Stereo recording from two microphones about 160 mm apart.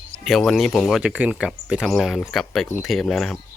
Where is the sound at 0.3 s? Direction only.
Centre (ahead or behind).